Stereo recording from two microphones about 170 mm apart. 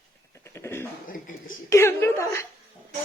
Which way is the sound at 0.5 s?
15° left (ahead or behind).